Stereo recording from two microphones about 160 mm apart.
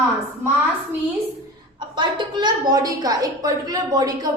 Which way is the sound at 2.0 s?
30° right (ahead or behind).